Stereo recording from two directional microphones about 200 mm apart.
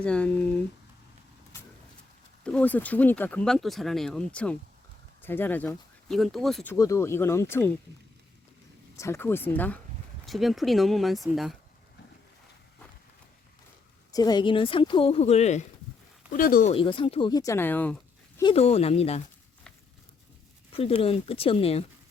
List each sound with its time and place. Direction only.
0.0 s speech: 5° left (ahead or behind)
2.4 s speech: 5° left (ahead or behind)
6.7 s speech: 15° left (ahead or behind)
9.0 s speech: 15° left (ahead or behind)
14.1 s speech: 20° left (ahead or behind)
16.3 s speech: 45° left (ahead or behind)
16.7 s speech: 25° left (ahead or behind); by 17.9 s 10° left (ahead or behind)
18.5 s speech: 30° left (ahead or behind)
20.7 s speech: 30° left (ahead or behind)